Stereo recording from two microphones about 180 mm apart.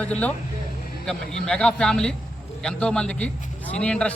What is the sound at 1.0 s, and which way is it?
A man's voice, 5° left (ahead or behind).